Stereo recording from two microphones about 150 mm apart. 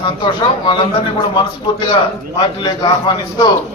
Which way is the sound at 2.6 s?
30° left (ahead or behind).